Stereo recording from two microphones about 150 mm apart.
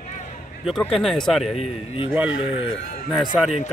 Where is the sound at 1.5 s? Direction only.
35° left (ahead or behind).